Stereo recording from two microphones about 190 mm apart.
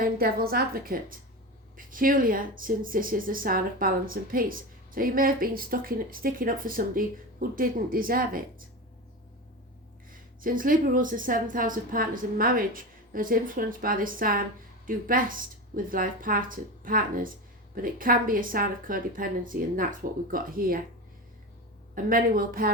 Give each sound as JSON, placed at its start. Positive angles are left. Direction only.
{"t": 0.0, "sound": "speech", "side_deg": -50}
{"t": 10.1, "sound": "speech", "side_deg": -45}
{"t": 21.9, "sound": "speech", "side_deg": -50}